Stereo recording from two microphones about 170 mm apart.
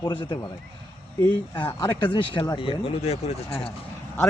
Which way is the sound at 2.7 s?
35° left (ahead or behind).